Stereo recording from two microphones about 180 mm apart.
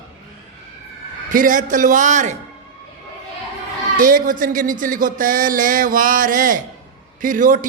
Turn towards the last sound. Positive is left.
turn(degrees=-50)  # may be behind; listen again after turning